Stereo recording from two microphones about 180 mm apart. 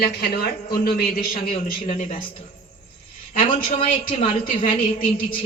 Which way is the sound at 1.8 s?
35° left (ahead or behind).